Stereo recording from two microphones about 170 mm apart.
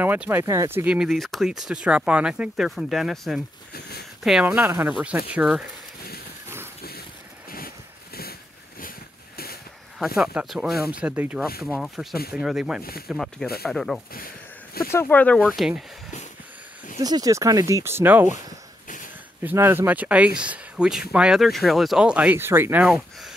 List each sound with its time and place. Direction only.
0.0 s speech: 10° right (ahead or behind)
9.9 s speech: centre (ahead or behind)
14.1 s a sound: 60° left (ahead or behind)
14.9 s speech: 15° left (ahead or behind)
17.0 s speech: 20° right (ahead or behind)
19.4 s speech: 15° right (ahead or behind)